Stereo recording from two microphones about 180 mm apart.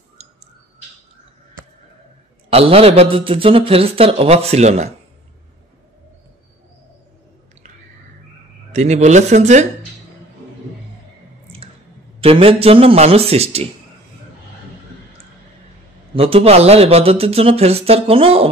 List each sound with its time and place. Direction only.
2.5 s a man's voice: 35° right (ahead or behind)
8.7 s a man's voice: 40° right (ahead or behind)
12.2 s a man's voice: 30° right (ahead or behind)
16.2 s a man's voice: 30° right (ahead or behind)